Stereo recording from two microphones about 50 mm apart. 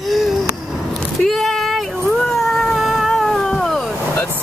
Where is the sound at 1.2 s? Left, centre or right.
Centre.